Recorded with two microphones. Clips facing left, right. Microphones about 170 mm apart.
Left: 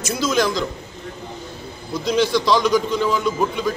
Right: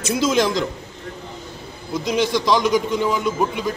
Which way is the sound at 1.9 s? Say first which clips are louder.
Left 1 dB; 20° right (ahead or behind).